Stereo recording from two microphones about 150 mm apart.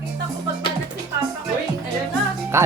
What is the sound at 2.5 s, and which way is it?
Music, 20° right (ahead or behind).